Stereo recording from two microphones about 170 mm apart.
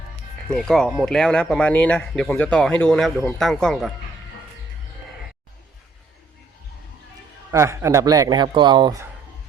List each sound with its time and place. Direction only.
0.4 s speech: 5° left (ahead or behind)
7.5 s speech: 15° right (ahead or behind)